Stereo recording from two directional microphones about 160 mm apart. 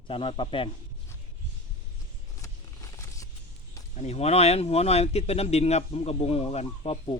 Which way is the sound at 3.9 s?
40° left (ahead or behind).